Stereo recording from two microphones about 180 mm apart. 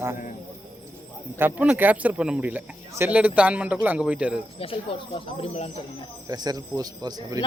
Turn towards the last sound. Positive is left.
turn(degrees=-20)  # may be behind; listen again after turning